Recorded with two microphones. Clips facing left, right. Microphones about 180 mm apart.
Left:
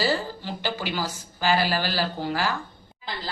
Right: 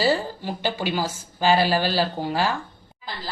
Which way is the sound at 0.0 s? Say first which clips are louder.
Right 3 dB; 20° right (ahead or behind).